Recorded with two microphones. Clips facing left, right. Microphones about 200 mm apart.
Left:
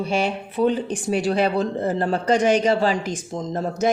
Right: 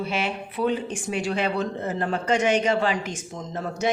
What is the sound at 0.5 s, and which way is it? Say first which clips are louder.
Speech: left 4 dB; 35° left (ahead or behind).